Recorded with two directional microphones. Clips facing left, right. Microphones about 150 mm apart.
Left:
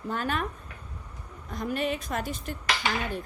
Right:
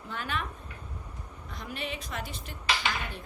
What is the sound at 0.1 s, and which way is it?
Speech, 45° left (ahead or behind).